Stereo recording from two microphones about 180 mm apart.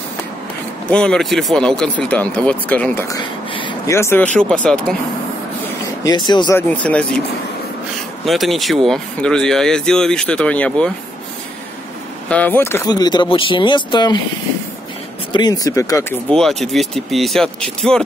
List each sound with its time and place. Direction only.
0.8 s speech: 5° left (ahead or behind)
3.5 s a sound: 25° left (ahead or behind)
3.9 s speech: 15° left (ahead or behind)
6.0 s speech: 25° left (ahead or behind)
6.8 s speech: 5° left (ahead or behind)
8.3 s speech: centre (ahead or behind)
12.3 s speech: 10° left (ahead or behind); by 14.2 s 25° left (ahead or behind)
15.3 s speech: 20° left (ahead or behind)
16.3 s speech: centre (ahead or behind)